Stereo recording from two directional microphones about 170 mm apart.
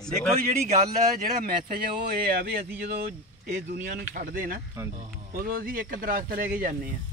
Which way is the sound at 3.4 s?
50° right (ahead or behind).